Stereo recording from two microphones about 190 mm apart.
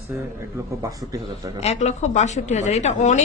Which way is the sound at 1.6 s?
35° left (ahead or behind).